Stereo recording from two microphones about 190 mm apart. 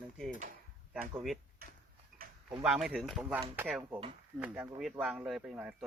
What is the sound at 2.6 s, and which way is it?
Speech, centre (ahead or behind).